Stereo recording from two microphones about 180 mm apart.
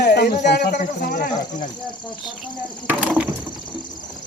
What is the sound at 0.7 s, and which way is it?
Speech, 50° left (ahead or behind).